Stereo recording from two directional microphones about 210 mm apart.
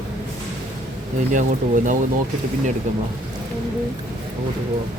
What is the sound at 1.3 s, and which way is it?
Speech, 35° right (ahead or behind).